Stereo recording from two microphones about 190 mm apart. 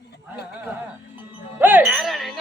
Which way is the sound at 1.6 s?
10° right (ahead or behind).